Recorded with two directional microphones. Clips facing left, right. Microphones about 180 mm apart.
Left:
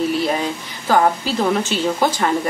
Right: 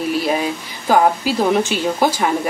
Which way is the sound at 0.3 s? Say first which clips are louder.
Right 2 dB; 10° right (ahead or behind).